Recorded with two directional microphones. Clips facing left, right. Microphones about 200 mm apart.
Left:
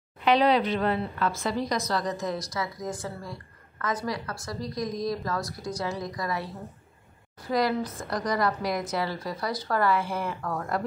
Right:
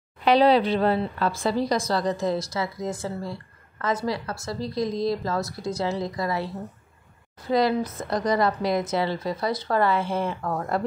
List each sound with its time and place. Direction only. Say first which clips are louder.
0.2 s a woman's voice: right 4 dB; 35° right (ahead or behind)